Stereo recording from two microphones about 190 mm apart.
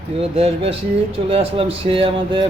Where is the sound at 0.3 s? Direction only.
30° right (ahead or behind).